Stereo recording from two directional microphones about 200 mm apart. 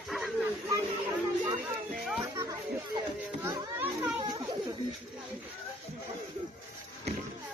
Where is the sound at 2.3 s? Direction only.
15° right (ahead or behind).